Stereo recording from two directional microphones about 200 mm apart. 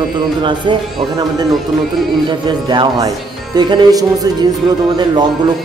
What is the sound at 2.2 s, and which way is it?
Speech, 25° right (ahead or behind).